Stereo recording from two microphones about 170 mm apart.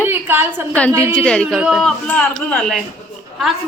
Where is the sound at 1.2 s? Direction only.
5° left (ahead or behind).